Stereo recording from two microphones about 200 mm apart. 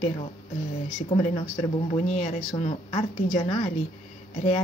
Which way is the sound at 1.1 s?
30° left (ahead or behind).